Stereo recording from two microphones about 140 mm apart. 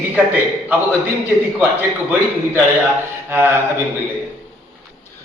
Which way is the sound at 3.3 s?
15° right (ahead or behind).